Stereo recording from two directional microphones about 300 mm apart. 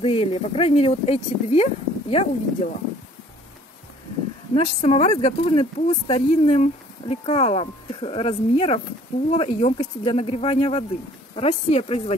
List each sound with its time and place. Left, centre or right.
0.0 s speech: centre
4.6 s speech: centre